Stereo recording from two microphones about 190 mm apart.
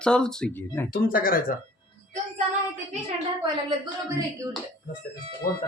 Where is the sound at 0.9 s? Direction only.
50° left (ahead or behind).